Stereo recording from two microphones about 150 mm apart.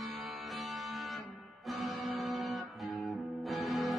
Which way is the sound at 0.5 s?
Centre (ahead or behind).